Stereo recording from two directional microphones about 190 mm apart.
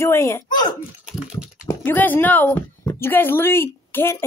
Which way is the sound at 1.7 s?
10° left (ahead or behind).